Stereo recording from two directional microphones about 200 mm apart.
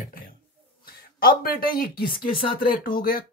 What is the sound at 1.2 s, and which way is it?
Speech, 50° left (ahead or behind).